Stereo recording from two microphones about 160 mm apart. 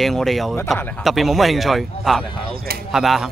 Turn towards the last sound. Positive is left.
turn(degrees=0)  # may be behind; listen again after turning